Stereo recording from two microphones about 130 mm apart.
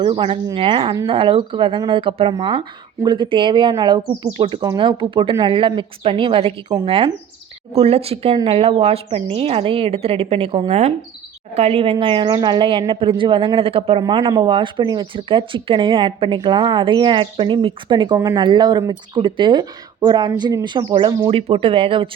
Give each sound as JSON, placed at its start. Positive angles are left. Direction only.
{"t": 0.0, "sound": "speech", "side_deg": -45}
{"t": 21.2, "sound": "speech", "side_deg": -45}